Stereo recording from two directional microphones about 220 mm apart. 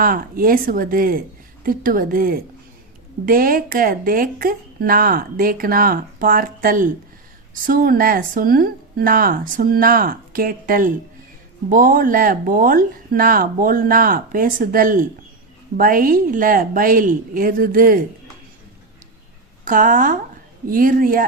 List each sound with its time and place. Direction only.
0.0 s speech: 40° right (ahead or behind)
19.6 s speech: 40° right (ahead or behind)